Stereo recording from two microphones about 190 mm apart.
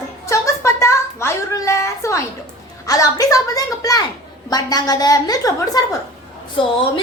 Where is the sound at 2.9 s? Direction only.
20° left (ahead or behind).